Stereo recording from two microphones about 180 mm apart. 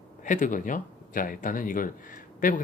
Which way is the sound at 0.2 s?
45° left (ahead or behind).